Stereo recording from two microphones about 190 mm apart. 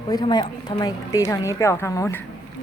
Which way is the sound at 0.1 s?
20° left (ahead or behind).